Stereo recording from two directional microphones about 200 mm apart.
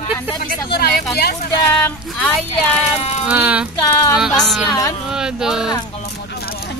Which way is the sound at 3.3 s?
5° right (ahead or behind).